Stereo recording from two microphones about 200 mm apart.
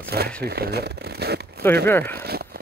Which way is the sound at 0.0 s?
50° right (ahead or behind).